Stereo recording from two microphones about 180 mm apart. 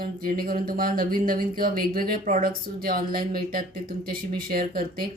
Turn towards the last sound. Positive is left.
turn(degrees=-55)  # may be behind; listen again after turning